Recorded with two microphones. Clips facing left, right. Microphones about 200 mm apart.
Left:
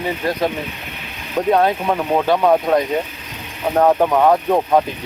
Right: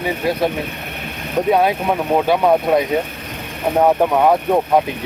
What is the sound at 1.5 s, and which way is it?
Speech, 10° right (ahead or behind).